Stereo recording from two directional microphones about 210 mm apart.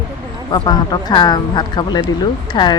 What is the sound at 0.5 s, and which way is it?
Speech, 20° left (ahead or behind).